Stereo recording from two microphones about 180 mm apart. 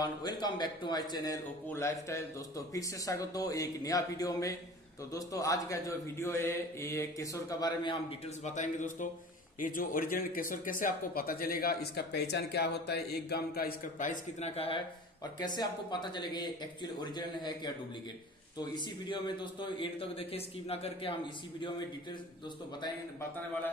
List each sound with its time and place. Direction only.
0.0 s a man's voice: 20° left (ahead or behind)
8.5 s a man's voice: 45° left (ahead or behind)
15.3 s a man's voice: 25° left (ahead or behind)
18.6 s a man's voice: 25° left (ahead or behind)